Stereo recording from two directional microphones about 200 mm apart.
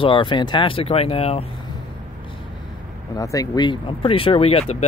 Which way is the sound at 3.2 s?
15° left (ahead or behind).